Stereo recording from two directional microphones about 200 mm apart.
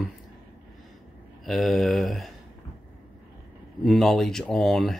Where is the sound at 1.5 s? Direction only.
Centre (ahead or behind).